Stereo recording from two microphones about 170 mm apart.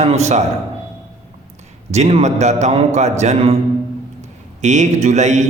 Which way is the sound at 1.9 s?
40° right (ahead or behind).